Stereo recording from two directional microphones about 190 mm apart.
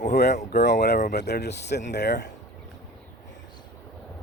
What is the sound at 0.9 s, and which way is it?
Speech, 50° left (ahead or behind).